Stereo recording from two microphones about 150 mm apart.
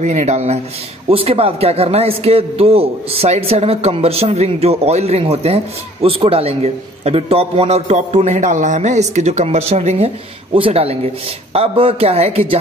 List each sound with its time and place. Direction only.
0.0 s a man's voice: 50° right (ahead or behind)